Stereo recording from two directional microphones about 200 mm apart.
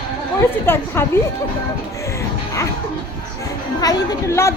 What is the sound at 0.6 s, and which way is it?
Speech, 10° left (ahead or behind).